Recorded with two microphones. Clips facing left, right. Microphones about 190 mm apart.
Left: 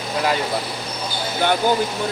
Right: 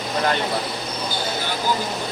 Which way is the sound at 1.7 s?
55° left (ahead or behind).